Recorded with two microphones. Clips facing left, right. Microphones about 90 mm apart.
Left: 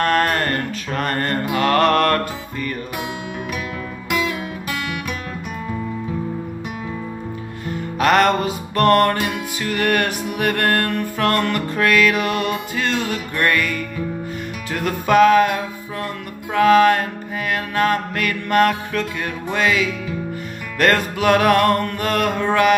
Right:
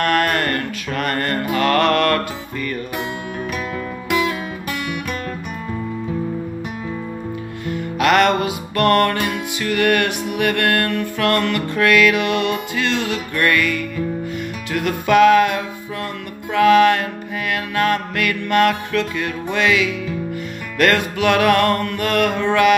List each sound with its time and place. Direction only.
0.0 s mantra: 35° left (ahead or behind)
1.6 s music: 35° left (ahead or behind)
7.6 s music: 35° left (ahead or behind)
20.8 s music: 40° left (ahead or behind)